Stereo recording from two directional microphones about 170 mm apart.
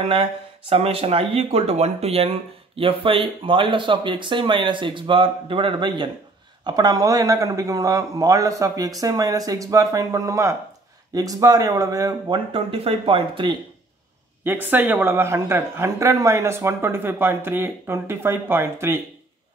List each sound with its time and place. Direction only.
0.0 s speech: 35° right (ahead or behind)
14.4 s speech: 10° right (ahead or behind)